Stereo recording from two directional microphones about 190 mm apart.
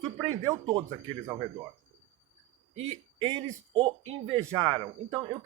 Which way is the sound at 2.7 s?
30° right (ahead or behind).